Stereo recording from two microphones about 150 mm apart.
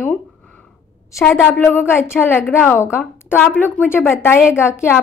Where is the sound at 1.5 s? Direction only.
10° left (ahead or behind).